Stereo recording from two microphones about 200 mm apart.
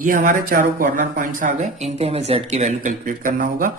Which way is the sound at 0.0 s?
40° right (ahead or behind).